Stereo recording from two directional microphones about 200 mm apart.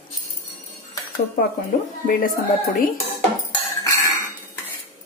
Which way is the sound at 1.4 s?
45° left (ahead or behind).